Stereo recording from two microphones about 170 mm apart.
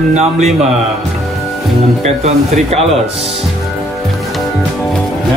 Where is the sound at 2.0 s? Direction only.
40° right (ahead or behind).